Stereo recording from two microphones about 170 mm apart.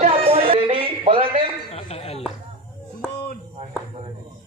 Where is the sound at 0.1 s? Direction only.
35° right (ahead or behind).